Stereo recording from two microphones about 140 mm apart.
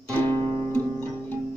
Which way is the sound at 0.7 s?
15° left (ahead or behind).